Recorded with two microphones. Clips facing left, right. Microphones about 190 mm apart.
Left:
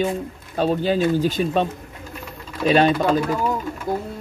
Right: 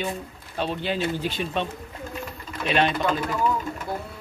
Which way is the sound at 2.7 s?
40° left (ahead or behind).